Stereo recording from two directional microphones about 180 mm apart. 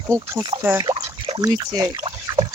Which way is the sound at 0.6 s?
20° right (ahead or behind).